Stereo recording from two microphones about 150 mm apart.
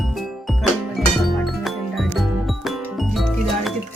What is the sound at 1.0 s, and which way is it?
Music, centre (ahead or behind).